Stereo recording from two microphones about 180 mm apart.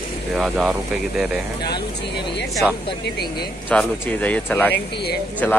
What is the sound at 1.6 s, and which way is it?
Speech, 25° left (ahead or behind).